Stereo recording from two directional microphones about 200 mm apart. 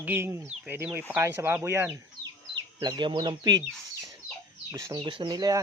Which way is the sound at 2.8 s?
25° right (ahead or behind).